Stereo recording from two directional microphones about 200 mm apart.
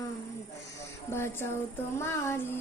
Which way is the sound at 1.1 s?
10° left (ahead or behind).